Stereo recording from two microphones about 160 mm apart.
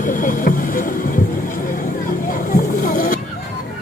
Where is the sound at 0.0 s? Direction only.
55° left (ahead or behind).